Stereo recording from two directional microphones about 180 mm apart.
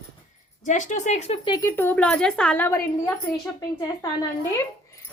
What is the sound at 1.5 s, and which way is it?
A woman's voice, 15° left (ahead or behind).